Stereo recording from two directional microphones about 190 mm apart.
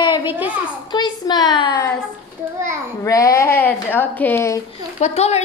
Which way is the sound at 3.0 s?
15° left (ahead or behind).